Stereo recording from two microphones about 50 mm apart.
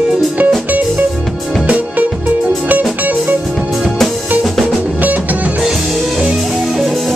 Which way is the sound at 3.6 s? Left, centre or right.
Centre.